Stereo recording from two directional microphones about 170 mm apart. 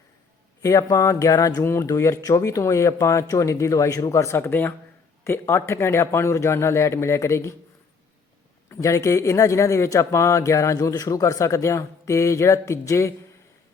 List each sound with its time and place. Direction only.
0.6 s a man's voice: 20° left (ahead or behind)
8.7 s a man's voice: 20° left (ahead or behind)